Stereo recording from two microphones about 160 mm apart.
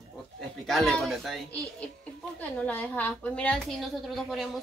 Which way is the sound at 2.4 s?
10° left (ahead or behind).